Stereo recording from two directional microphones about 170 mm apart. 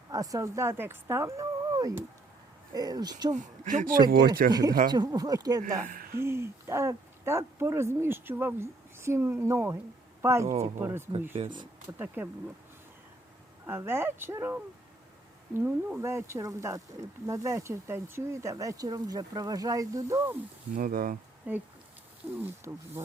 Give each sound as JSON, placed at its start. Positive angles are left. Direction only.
{"t": 0.1, "sound": "speech", "side_deg": -20}
{"t": 3.3, "sound": "speech", "side_deg": -45}
{"t": 4.5, "sound": "speech", "side_deg": -25}
{"t": 5.6, "sound": "speech", "side_deg": -55}
{"t": 6.1, "sound": "speech", "side_deg": -15}
{"t": 11.3, "sound": "speech", "side_deg": -30}
{"t": 11.9, "sound": "speech", "side_deg": -10}
{"t": 13.7, "sound": "speech", "side_deg": -15}
{"t": 20.7, "sound": "speech", "side_deg": -55}
{"t": 21.5, "sound": "speech", "side_deg": -10}